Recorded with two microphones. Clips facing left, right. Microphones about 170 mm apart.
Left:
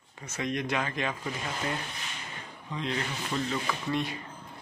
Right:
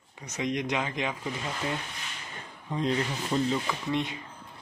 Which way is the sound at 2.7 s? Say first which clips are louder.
Right 5 dB; 50° right (ahead or behind).